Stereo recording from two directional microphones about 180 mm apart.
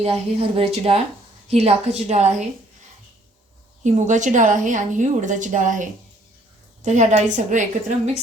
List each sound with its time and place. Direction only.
0.0 s a woman's voice: 35° right (ahead or behind)
3.8 s a woman's voice: 40° right (ahead or behind)